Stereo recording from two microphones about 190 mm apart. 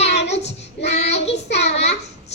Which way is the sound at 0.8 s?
35° left (ahead or behind).